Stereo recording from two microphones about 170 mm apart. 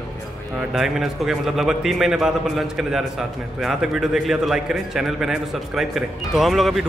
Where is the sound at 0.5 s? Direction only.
Centre (ahead or behind).